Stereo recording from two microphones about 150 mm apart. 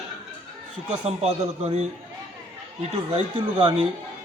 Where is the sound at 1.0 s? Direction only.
45° right (ahead or behind).